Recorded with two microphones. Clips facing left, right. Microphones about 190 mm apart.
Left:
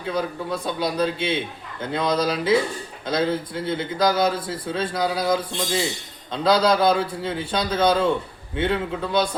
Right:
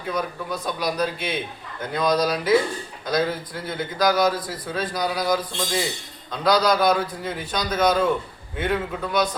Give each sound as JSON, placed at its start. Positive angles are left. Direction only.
{"t": 0.1, "sound": "a man's voice", "side_deg": 30}